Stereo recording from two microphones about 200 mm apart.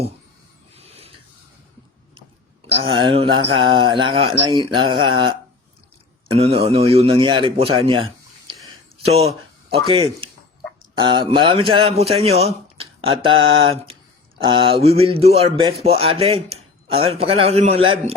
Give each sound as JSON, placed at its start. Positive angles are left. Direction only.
{"t": 0.8, "sound": "filing", "side_deg": -30}
{"t": 2.8, "sound": "speech", "side_deg": -25}
{"t": 6.3, "sound": "speech", "side_deg": -30}